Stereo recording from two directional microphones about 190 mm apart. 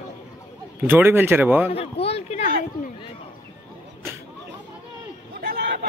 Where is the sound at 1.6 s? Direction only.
30° left (ahead or behind).